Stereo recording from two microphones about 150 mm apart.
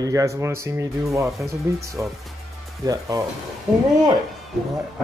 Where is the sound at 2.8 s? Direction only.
25° right (ahead or behind).